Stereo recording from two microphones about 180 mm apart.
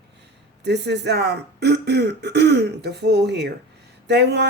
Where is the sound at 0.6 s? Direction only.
70° right (ahead or behind).